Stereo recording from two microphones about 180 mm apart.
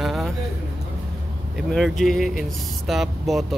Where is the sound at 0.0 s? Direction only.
Centre (ahead or behind).